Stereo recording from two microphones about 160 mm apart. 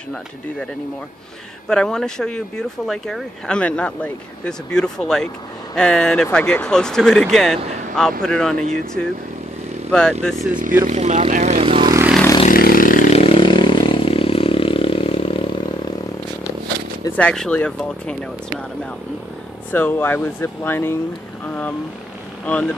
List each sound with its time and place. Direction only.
1.7 s speech: 5° left (ahead or behind)
10.6 s speech: 55° right (ahead or behind); by 11.9 s 35° right (ahead or behind)
12.4 s vehicle: 65° left (ahead or behind)
13.1 s vehicle: 35° left (ahead or behind)
17.2 s speech: 5° left (ahead or behind)
19.7 s speech: 10° left (ahead or behind)